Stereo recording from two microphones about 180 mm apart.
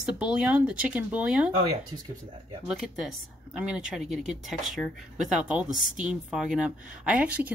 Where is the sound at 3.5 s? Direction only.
5° right (ahead or behind).